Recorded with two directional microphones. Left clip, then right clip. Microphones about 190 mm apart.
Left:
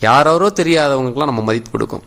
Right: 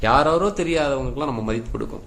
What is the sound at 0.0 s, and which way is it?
A man's voice, 40° left (ahead or behind).